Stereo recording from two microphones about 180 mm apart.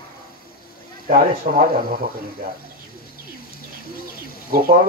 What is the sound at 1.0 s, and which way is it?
Speech, 45° right (ahead or behind).